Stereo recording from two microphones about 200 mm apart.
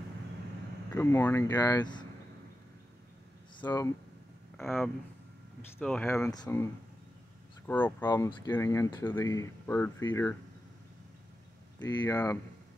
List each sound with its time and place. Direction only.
0.8 s speech: 10° left (ahead or behind)
3.6 s speech: 15° left (ahead or behind)
4.6 s speech: centre (ahead or behind)
8.1 s speech: 20° left (ahead or behind)
11.8 s speech: 15° left (ahead or behind)